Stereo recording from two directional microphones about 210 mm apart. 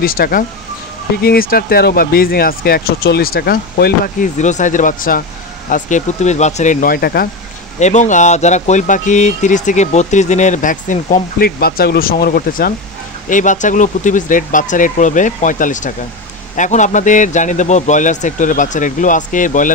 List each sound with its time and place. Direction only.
0.0 s speech: 45° left (ahead or behind)
7.8 s speech: 35° left (ahead or behind)